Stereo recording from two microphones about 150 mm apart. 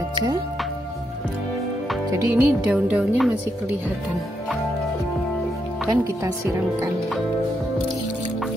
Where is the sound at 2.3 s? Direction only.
10° right (ahead or behind).